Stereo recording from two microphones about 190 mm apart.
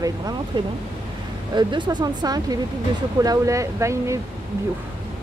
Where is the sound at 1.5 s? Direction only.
25° right (ahead or behind).